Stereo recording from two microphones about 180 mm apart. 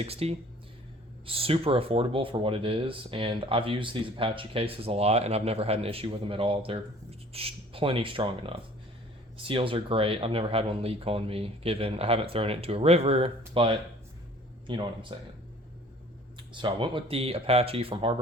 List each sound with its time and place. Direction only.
0.0 s speech: 35° right (ahead or behind)
16.5 s speech: 25° right (ahead or behind)